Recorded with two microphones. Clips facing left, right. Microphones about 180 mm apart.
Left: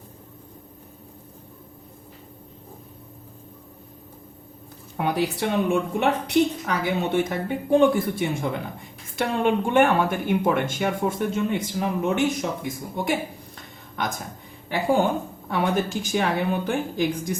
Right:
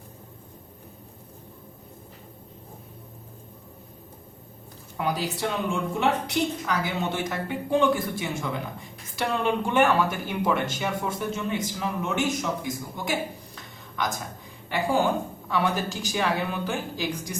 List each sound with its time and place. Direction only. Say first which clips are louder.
4.9 s a woman's voice: left 4 dB; 60° left (ahead or behind)
14.7 s a woman's voice: left 2 dB; 55° left (ahead or behind)